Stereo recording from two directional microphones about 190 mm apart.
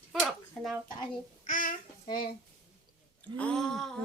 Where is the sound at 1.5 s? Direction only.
45° left (ahead or behind).